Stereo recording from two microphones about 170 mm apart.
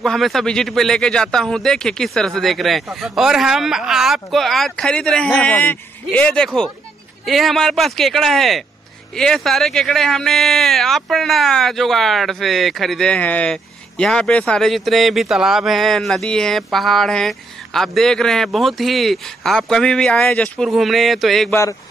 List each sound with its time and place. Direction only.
0.0 s speech: centre (ahead or behind)
21.5 s speech: 15° left (ahead or behind)